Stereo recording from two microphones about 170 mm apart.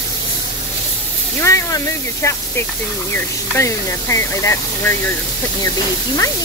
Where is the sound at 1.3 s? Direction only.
15° left (ahead or behind).